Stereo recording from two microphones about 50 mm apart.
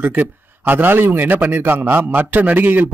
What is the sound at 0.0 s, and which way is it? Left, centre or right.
A man's voice, right.